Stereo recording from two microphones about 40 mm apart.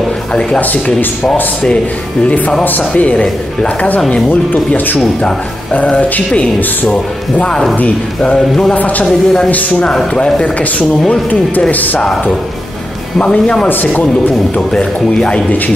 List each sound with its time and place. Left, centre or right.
0.5 s speech: left
8.7 s speech: left
9.0 s a woman's voice: centre
11.7 s speech: left
13.7 s speech: left
14.7 s speech: left